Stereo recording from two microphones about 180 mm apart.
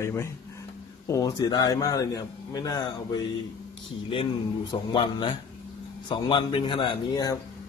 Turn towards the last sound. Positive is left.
turn(degrees=25)  # may be behind; listen again after turning